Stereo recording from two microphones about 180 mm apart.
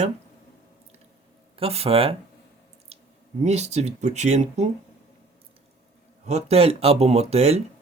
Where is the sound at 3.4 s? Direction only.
40° right (ahead or behind).